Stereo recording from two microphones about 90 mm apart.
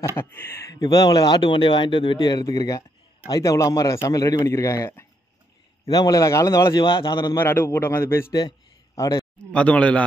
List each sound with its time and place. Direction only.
0.1 s a man's voice: 20° left (ahead or behind)
0.7 s speech: 40° left (ahead or behind)
1.4 s a man's voice: 65° left (ahead or behind); by 5.0 s 30° left (ahead or behind)
5.9 s a man's voice: 45° left (ahead or behind)
6.8 s speech: 65° left (ahead or behind)
7.3 s a man's voice: 25° left (ahead or behind)
8.3 s speech: 50° left (ahead or behind)
8.9 s speech: 40° left (ahead or behind)
9.4 s speech: 10° left (ahead or behind)